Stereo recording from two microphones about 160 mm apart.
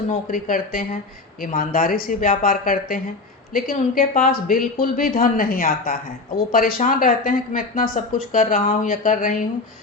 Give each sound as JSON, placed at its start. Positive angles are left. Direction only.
{"t": 0.1, "sound": "speech", "side_deg": 55}